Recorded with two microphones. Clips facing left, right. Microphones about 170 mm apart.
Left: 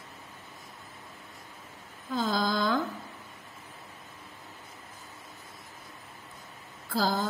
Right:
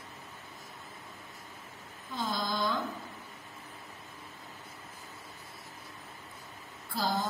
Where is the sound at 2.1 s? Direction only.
90° left.